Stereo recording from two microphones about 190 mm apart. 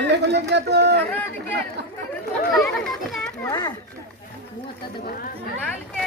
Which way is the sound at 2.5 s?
Centre (ahead or behind).